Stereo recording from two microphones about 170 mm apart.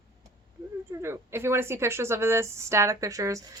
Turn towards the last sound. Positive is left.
turn(degrees=-20)  # may be behind; listen again after turning